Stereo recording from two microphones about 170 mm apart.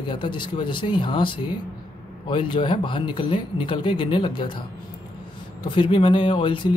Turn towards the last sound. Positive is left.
turn(degrees=30)  # may be behind; listen again after turning